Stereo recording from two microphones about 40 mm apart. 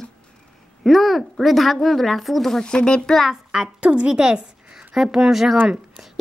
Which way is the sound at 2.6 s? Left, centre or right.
Left.